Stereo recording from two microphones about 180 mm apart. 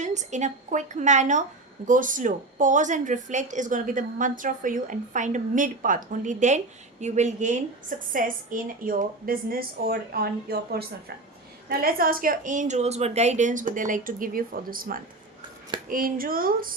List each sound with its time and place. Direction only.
0.0 s a woman's voice: 40° right (ahead or behind)